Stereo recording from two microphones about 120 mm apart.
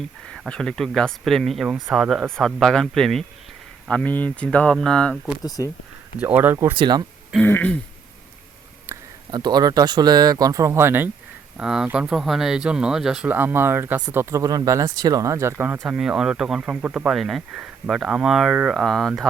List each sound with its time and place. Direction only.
0.3 s speech: 5° left (ahead or behind)
5.4 s speech: 30° left (ahead or behind)
6.1 s speech: 15° right (ahead or behind)
6.7 s speech: 40° right (ahead or behind)
7.4 s speech: 15° left (ahead or behind)
9.3 s speech: 35° right (ahead or behind); by 11.1 s 20° right (ahead or behind)
11.5 s speech: 5° right (ahead or behind)
13.2 s speech: 15° right (ahead or behind)
15.8 s speech: 5° right (ahead or behind)